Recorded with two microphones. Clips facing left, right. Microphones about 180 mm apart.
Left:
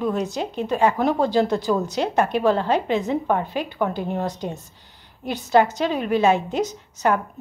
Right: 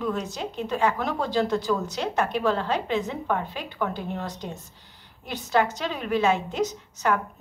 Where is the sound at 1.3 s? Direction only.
25° left (ahead or behind).